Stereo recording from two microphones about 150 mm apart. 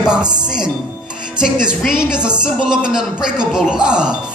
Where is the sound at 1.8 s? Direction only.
5° right (ahead or behind).